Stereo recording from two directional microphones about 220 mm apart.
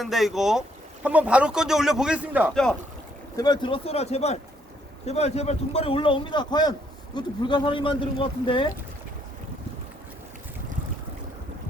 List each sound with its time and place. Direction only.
0.0 s speech: centre (ahead or behind)
3.3 s a man's voice: 20° left (ahead or behind)